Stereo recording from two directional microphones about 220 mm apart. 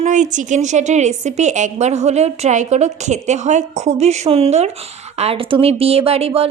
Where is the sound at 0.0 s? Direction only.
35° right (ahead or behind).